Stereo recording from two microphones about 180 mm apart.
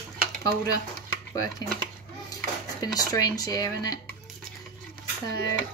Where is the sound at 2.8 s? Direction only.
20° left (ahead or behind).